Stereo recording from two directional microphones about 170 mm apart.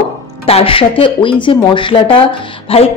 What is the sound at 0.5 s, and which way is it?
Speech, 35° left (ahead or behind).